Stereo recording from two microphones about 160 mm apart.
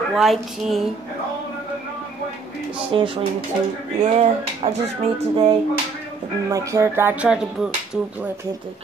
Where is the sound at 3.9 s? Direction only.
45° right (ahead or behind).